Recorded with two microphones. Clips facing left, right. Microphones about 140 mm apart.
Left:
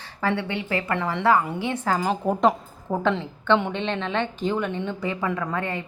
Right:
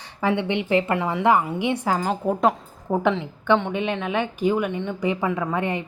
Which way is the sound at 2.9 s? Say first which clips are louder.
Right 2 dB; 15° right (ahead or behind).